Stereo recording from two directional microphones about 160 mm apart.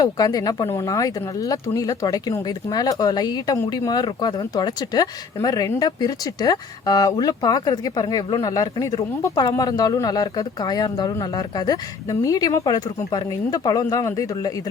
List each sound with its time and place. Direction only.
0.0 s speech: 25° left (ahead or behind)